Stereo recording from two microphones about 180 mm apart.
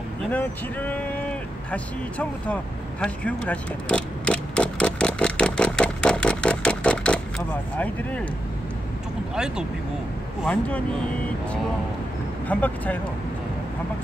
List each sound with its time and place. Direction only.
0.3 s speech: 10° left (ahead or behind)
1.7 s vehicle: 5° left (ahead or behind)
9.3 s speech: 5° right (ahead or behind)
12.4 s speech: 10° left (ahead or behind)